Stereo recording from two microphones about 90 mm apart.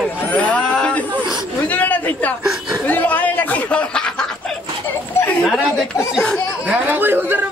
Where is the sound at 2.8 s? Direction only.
20° left (ahead or behind).